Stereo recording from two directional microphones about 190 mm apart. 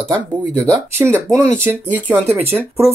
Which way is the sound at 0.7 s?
15° right (ahead or behind).